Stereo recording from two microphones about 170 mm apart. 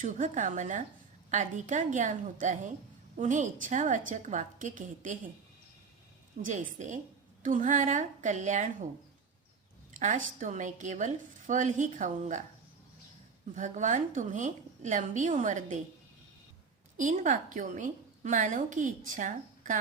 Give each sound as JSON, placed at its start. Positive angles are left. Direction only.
{"t": 0.0, "sound": "a woman's voice", "side_deg": -45}
{"t": 6.4, "sound": "a woman's voice", "side_deg": -50}
{"t": 10.0, "sound": "a woman's voice", "side_deg": -45}
{"t": 13.6, "sound": "a woman's voice", "side_deg": -50}
{"t": 17.0, "sound": "a woman's voice", "side_deg": -50}